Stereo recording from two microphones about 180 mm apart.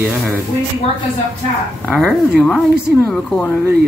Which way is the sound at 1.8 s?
5° left (ahead or behind).